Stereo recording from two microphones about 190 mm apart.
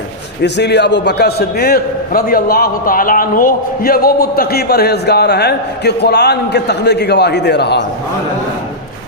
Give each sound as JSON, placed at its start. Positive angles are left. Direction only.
{"t": 0.4, "sound": "a man's voice", "side_deg": 65}